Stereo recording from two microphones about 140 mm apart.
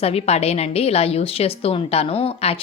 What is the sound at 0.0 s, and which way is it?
A woman's voice, 45° left (ahead or behind).